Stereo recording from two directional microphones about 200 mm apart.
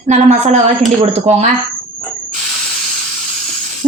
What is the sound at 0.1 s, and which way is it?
A woman's voice, 35° right (ahead or behind).